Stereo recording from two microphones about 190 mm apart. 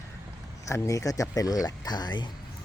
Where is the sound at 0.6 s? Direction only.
15° left (ahead or behind).